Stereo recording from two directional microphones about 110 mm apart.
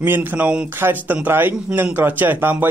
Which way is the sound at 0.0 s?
20° right (ahead or behind).